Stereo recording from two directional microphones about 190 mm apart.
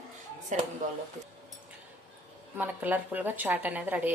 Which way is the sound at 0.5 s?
40° right (ahead or behind).